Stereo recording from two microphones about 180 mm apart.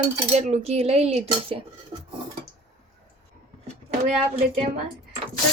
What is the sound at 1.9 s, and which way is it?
Dishes, 25° right (ahead or behind).